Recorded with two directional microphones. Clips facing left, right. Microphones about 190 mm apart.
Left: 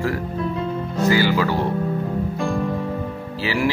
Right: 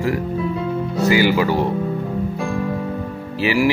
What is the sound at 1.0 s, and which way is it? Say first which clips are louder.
Speech: right 2 dB; 15° right (ahead or behind).